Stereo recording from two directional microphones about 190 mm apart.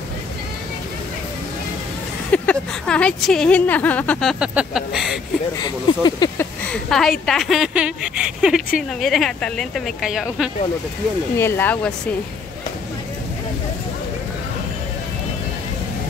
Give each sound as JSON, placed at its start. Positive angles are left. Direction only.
{"t": 2.3, "sound": "speech", "side_deg": 5}
{"t": 5.6, "sound": "speech", "side_deg": 25}
{"t": 6.7, "sound": "speech", "side_deg": 0}
{"t": 11.3, "sound": "speech", "side_deg": 10}